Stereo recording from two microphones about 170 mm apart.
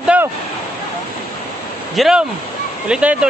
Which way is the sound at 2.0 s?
5° right (ahead or behind).